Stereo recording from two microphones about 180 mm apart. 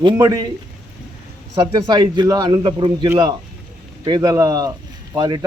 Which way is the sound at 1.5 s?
25° right (ahead or behind).